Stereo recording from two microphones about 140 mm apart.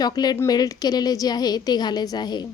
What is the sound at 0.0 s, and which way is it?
A woman's voice, 30° left (ahead or behind).